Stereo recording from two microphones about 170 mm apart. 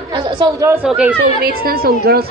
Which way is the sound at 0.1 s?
25° right (ahead or behind).